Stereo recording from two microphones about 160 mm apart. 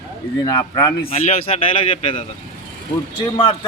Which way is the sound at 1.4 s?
35° left (ahead or behind).